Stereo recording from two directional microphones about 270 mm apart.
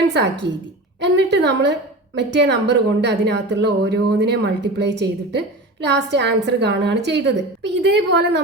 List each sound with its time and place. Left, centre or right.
0.9 s a woman's voice: right